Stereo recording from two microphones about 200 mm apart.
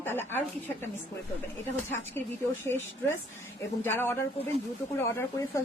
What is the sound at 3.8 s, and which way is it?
A woman's voice, 10° left (ahead or behind).